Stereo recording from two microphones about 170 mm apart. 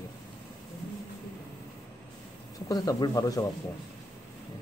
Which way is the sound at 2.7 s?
20° left (ahead or behind).